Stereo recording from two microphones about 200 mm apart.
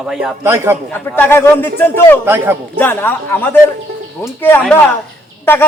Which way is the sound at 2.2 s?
10° right (ahead or behind).